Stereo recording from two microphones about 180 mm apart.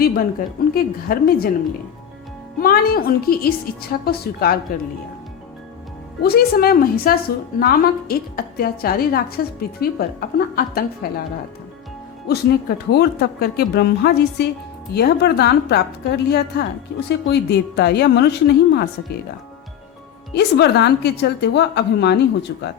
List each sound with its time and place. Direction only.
0.0 s a woman's voice: 55° left (ahead or behind)
2.6 s a woman's voice: 55° left (ahead or behind)
6.2 s a woman's voice: 60° left (ahead or behind)
12.3 s a woman's voice: 65° left (ahead or behind)
20.3 s a woman's voice: 65° left (ahead or behind)